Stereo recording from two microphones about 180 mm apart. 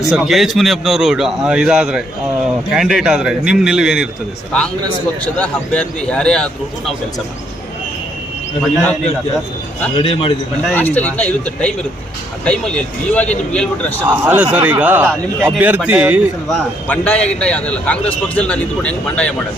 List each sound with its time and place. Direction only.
0.1 s a man's voice: centre (ahead or behind)
5.2 s a man's voice: 5° left (ahead or behind)
8.6 s a man's voice: centre (ahead or behind)
9.9 s a man's voice: 30° left (ahead or behind)
10.7 s a man's voice: 10° left (ahead or behind)
14.1 s a man's voice: 10° right (ahead or behind)
16.5 s a man's voice: 5° left (ahead or behind)